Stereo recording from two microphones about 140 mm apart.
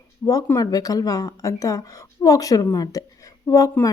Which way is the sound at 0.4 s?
25° left (ahead or behind).